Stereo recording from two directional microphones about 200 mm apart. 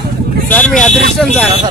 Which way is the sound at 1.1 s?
Centre (ahead or behind).